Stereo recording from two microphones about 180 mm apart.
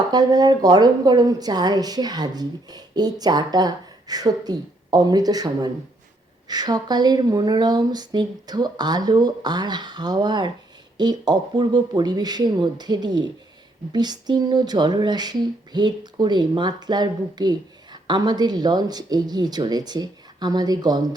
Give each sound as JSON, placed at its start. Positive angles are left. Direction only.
{"t": 0.1, "sound": "speech", "side_deg": -20}